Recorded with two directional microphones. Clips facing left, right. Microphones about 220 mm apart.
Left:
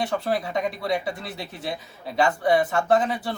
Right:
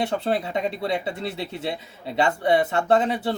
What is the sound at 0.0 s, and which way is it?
Speech, 25° right (ahead or behind).